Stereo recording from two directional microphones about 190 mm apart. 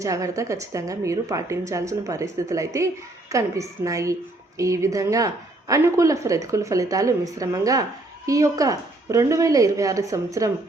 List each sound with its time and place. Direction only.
0.0 s a woman's voice: 15° right (ahead or behind)